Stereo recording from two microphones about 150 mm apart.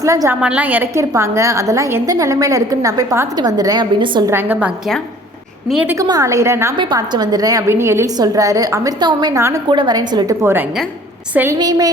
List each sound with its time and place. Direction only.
0.0 s a woman's voice: 20° right (ahead or behind)
0.4 s a woman's voice: 10° right (ahead or behind); by 4.2 s 30° right (ahead or behind)
4.3 s a woman's voice: 15° right (ahead or behind)
5.6 s a woman's voice: 5° right (ahead or behind)
5.9 s a woman's voice: 25° right (ahead or behind)
6.7 s a woman's voice: 30° right (ahead or behind)
9.6 s a woman's voice: 30° right (ahead or behind)
10.4 s a woman's voice: 15° right (ahead or behind)
11.5 s a woman's voice: 25° right (ahead or behind)